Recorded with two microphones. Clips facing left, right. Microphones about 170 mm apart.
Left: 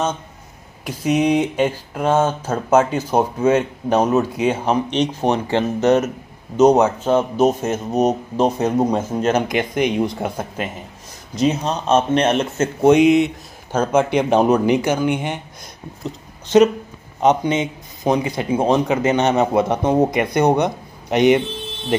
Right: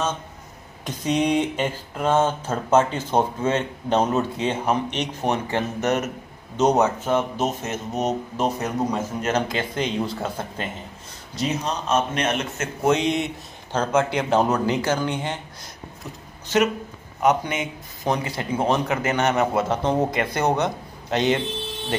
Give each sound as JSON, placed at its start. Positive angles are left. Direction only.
{"t": 0.8, "sound": "speech", "side_deg": 10}
{"t": 6.8, "sound": "speech", "side_deg": 15}
{"t": 9.3, "sound": "speech", "side_deg": 15}
{"t": 11.3, "sound": "speech", "side_deg": 25}
{"t": 13.1, "sound": "speech", "side_deg": 5}